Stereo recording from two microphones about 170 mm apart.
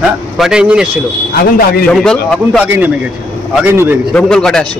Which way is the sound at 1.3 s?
60° left (ahead or behind).